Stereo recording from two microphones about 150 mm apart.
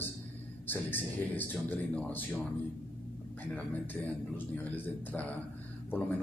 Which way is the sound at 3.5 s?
10° left (ahead or behind).